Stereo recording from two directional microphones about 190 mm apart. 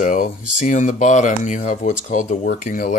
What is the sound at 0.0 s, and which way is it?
Speech, 40° left (ahead or behind).